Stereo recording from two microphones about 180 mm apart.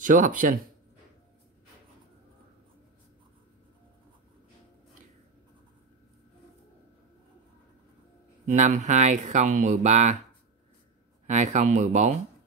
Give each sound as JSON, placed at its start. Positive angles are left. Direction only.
{"t": 0.0, "sound": "speech", "side_deg": -50}
{"t": 8.5, "sound": "speech", "side_deg": -40}
{"t": 11.2, "sound": "speech", "side_deg": -40}